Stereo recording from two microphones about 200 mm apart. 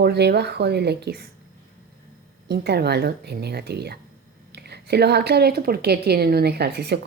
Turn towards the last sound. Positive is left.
turn(degrees=-55)  # may be behind; listen again after turning